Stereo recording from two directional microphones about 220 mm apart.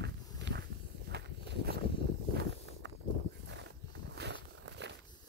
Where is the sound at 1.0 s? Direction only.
50° right (ahead or behind).